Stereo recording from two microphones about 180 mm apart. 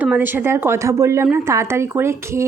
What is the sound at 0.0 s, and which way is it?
A woman's voice, 10° right (ahead or behind).